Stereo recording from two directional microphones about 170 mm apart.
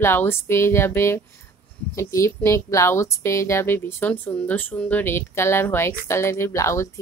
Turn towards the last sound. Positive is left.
turn(degrees=15)  # may be behind; listen again after turning